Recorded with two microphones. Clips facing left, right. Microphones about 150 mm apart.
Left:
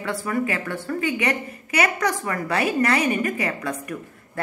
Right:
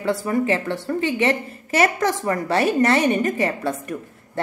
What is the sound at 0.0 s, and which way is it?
Speech, 30° right (ahead or behind).